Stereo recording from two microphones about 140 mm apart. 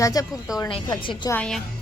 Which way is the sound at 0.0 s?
25° left (ahead or behind).